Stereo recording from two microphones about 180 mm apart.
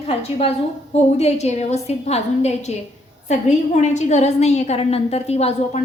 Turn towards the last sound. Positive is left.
turn(degrees=35)  # may be behind; listen again after turning